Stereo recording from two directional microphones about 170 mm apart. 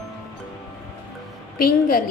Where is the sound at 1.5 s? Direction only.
60° left (ahead or behind).